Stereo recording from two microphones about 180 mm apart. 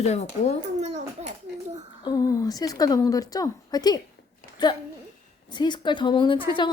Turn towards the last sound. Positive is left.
turn(degrees=25)  # may be behind; listen again after turning